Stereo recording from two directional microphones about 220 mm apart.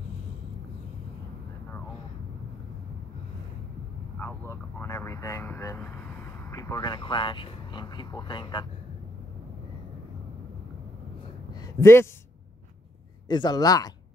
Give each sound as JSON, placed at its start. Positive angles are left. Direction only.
{"t": 4.2, "sound": "vehicle", "side_deg": 10}
{"t": 11.6, "sound": "a man's voice", "side_deg": 10}
{"t": 13.3, "sound": "speech", "side_deg": 20}